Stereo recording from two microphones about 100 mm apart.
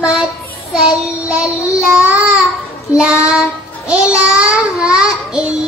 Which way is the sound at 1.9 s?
15° right (ahead or behind).